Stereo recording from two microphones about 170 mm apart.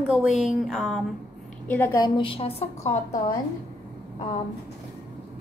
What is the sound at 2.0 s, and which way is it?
A woman's voice, 25° left (ahead or behind).